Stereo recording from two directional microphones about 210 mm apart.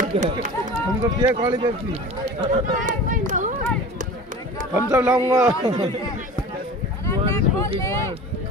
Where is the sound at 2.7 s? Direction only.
40° right (ahead or behind).